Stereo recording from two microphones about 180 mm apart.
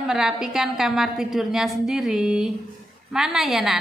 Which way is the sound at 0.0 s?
Centre (ahead or behind).